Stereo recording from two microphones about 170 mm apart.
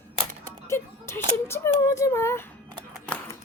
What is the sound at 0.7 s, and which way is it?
Speech, 15° left (ahead or behind).